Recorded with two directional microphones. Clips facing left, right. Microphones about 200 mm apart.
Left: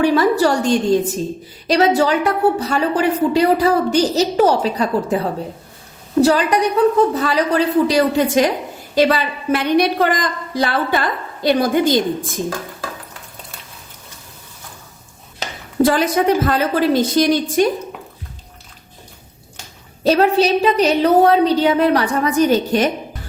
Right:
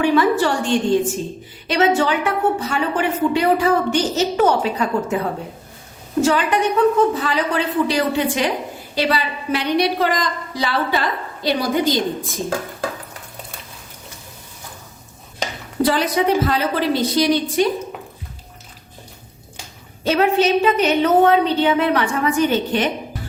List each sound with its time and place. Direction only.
0.0 s a woman's voice: 40° left (ahead or behind)
6.2 s a woman's voice: 40° left (ahead or behind)
15.8 s a woman's voice: 50° left (ahead or behind)
20.1 s a woman's voice: 35° left (ahead or behind)